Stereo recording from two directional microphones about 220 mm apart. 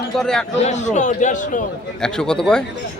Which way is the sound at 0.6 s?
30° left (ahead or behind).